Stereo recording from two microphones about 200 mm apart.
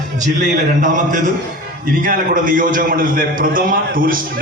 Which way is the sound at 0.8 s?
40° right (ahead or behind).